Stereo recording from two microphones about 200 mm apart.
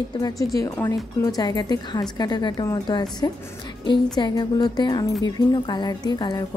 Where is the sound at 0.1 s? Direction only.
20° left (ahead or behind).